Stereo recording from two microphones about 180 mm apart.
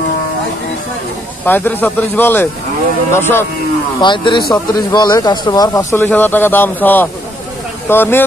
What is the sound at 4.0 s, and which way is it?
Speech, 25° left (ahead or behind).